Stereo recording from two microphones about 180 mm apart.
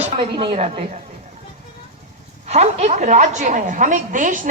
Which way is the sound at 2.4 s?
40° right (ahead or behind).